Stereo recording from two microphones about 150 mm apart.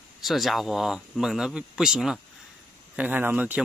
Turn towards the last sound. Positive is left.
turn(degrees=-10)  # may be behind; listen again after turning